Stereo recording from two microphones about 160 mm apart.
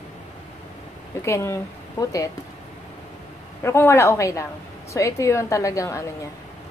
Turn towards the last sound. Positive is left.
turn(degrees=20)  # may be behind; listen again after turning